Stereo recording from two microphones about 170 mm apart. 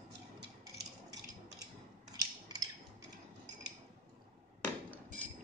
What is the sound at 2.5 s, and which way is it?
Mechanisms, 25° right (ahead or behind).